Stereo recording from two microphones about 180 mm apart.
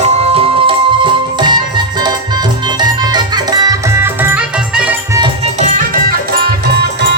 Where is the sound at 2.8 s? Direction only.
25° right (ahead or behind); by 5.2 s 5° right (ahead or behind).